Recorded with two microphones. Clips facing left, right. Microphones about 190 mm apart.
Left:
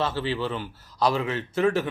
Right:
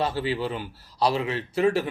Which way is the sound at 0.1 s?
10° right (ahead or behind).